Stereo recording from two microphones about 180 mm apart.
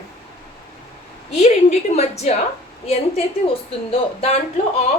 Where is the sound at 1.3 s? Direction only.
40° left (ahead or behind).